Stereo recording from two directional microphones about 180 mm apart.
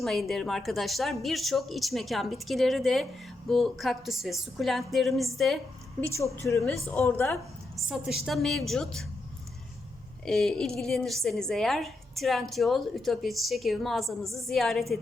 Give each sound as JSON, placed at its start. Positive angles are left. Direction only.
{"t": 0.0, "sound": "a woman's voice", "side_deg": 0}
{"t": 6.1, "sound": "a woman's voice", "side_deg": 15}
{"t": 7.9, "sound": "a woman's voice", "side_deg": 0}
{"t": 10.2, "sound": "a woman's voice", "side_deg": 0}